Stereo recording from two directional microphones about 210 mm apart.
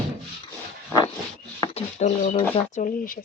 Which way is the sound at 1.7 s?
35° left (ahead or behind).